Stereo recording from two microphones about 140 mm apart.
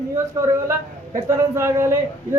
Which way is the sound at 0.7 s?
20° right (ahead or behind).